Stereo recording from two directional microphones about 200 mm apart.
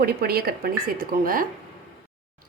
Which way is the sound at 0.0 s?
50° right (ahead or behind).